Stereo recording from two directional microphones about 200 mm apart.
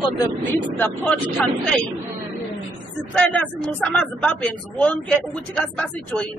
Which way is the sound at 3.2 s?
5° left (ahead or behind).